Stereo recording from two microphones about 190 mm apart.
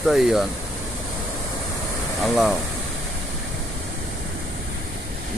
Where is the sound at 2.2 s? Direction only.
Centre (ahead or behind).